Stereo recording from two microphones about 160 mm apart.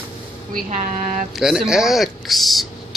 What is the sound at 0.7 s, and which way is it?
Speech, 50° right (ahead or behind).